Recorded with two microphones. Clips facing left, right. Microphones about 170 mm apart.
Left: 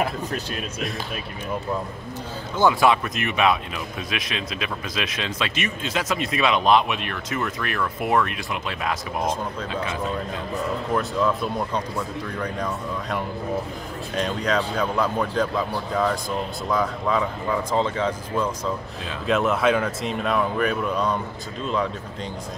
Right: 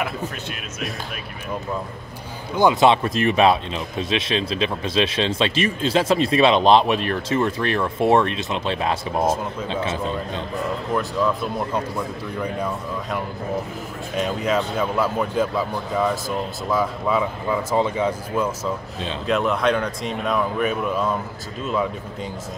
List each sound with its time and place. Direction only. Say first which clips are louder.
0.0 s speech: left 1 dB; 35° left (ahead or behind)
2.5 s speech: right 3 dB; 20° right (ahead or behind)
11.0 s speech: right 1 dB; centre (ahead or behind)
16.6 s speech: right 2 dB; 5° right (ahead or behind)
19.2 s speech: even; centre (ahead or behind)